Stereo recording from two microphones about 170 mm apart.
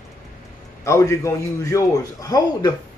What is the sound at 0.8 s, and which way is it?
A man's voice, 15° left (ahead or behind).